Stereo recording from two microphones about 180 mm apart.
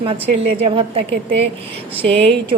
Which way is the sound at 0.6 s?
30° right (ahead or behind).